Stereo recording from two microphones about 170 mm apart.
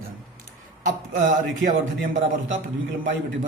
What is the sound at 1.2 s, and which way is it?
Speech, 50° right (ahead or behind).